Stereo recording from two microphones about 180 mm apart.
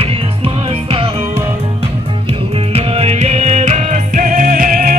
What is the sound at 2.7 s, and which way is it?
Music, 35° right (ahead or behind).